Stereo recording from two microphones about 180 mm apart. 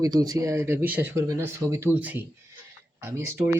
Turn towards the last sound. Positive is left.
turn(degrees=-15)  # may be behind; listen again after turning